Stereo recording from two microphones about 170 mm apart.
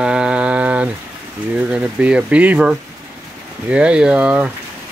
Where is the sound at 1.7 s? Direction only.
5° right (ahead or behind).